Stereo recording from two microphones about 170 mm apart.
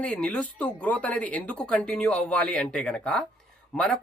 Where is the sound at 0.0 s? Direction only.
5° left (ahead or behind).